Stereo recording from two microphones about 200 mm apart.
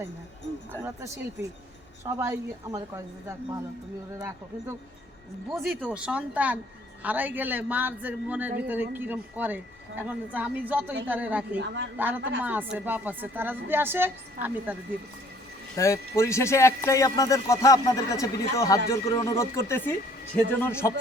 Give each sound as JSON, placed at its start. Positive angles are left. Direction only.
{"t": 0.9, "sound": "a man's voice", "side_deg": -15}
{"t": 5.5, "sound": "a man's voice", "side_deg": -5}
{"t": 11.5, "sound": "speech", "side_deg": -65}
{"t": 11.9, "sound": "a man's voice", "side_deg": -10}
{"t": 15.7, "sound": "speech", "side_deg": 15}